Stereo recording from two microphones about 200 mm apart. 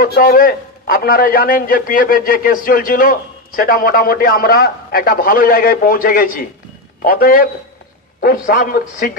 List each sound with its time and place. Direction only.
0.0 s a man's voice: 45° left (ahead or behind)